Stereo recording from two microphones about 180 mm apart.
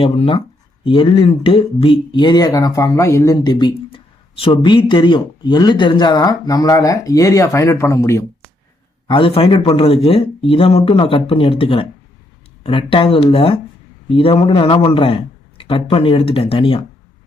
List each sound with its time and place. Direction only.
0.0 s speech: 30° left (ahead or behind)
9.0 s speech: 30° left (ahead or behind)